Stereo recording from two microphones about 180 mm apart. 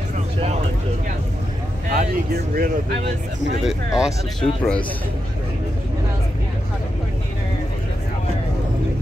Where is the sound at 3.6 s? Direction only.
Centre (ahead or behind).